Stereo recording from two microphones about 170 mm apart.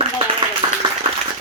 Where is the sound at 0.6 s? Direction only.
25° right (ahead or behind).